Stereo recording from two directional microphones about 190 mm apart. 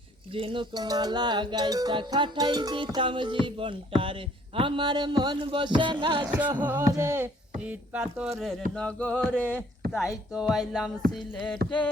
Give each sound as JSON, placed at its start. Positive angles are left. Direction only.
{"t": 0.3, "sound": "music", "side_deg": -30}
{"t": 6.2, "sound": "a sound", "side_deg": -10}
{"t": 8.7, "sound": "speech", "side_deg": 5}
{"t": 10.3, "sound": "speech", "side_deg": -5}